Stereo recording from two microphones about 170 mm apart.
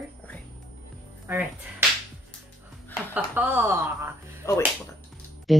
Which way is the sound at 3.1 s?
10° right (ahead or behind).